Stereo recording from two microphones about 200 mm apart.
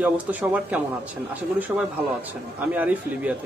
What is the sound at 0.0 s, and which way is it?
Speech, 10° right (ahead or behind).